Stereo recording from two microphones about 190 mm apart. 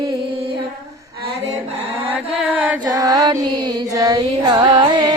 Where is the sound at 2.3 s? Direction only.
5° right (ahead or behind).